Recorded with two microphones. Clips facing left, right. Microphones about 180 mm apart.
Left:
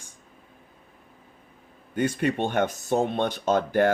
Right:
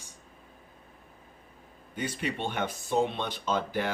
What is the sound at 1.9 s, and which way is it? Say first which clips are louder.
Speech: left 9 dB; 50° left (ahead or behind).